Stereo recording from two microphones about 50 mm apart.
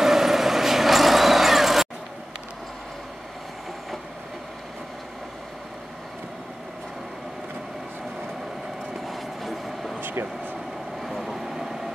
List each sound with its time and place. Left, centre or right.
0.0 s vehicle: centre
9.0 s train: centre
9.9 s vehicle: right
11.0 s vehicle: centre